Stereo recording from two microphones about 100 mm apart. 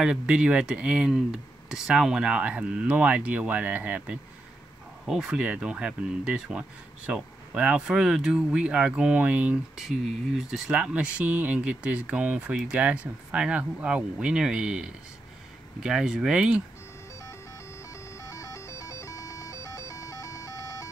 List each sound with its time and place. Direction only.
0.0 s speech: 10° right (ahead or behind)
18.1 s music: 30° left (ahead or behind)